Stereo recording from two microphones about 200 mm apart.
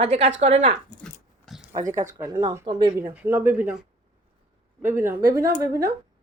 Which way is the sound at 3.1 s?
10° right (ahead or behind).